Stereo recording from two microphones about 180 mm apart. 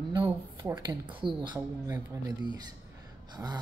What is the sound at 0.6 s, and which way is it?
Speech, 20° right (ahead or behind).